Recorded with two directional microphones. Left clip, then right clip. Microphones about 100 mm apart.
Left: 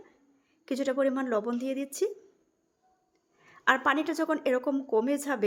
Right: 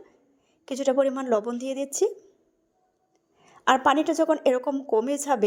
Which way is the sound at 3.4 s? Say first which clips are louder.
Right 5 dB; 40° right (ahead or behind).